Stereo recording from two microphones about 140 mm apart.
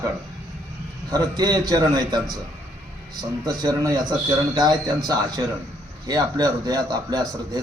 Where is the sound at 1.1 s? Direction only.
30° right (ahead or behind).